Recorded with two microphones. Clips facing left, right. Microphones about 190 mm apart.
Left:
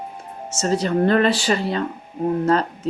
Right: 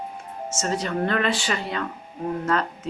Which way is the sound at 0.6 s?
35° left (ahead or behind).